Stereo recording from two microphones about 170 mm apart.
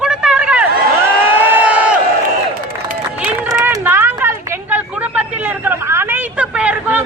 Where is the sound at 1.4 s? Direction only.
10° right (ahead or behind).